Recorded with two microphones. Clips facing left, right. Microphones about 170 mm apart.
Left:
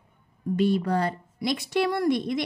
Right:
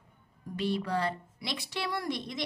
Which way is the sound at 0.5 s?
45° left (ahead or behind).